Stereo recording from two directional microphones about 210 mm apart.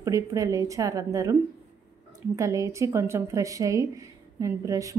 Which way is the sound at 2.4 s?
15° right (ahead or behind).